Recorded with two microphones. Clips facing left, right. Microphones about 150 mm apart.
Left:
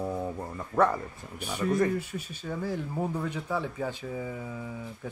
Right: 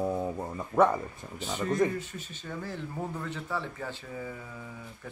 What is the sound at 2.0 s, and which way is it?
Speech, 10° left (ahead or behind).